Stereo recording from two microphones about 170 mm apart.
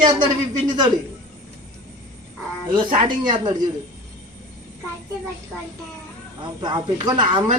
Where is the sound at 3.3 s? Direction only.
25° right (ahead or behind).